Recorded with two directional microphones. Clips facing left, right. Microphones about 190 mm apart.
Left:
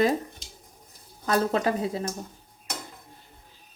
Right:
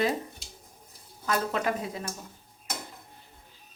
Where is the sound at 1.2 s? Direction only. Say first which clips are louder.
Left 4 dB; 35° left (ahead or behind).